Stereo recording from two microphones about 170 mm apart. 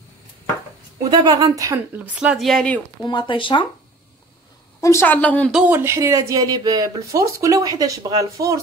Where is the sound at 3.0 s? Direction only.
30° left (ahead or behind).